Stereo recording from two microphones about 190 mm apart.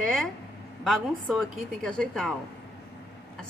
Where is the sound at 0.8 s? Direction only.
Centre (ahead or behind).